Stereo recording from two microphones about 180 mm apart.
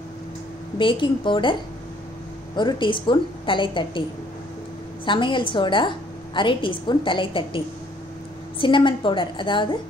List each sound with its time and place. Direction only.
0.7 s a woman's voice: 30° left (ahead or behind)
5.0 s a woman's voice: 25° left (ahead or behind)